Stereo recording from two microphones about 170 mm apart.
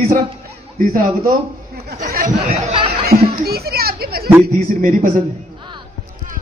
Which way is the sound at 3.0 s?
65° right (ahead or behind).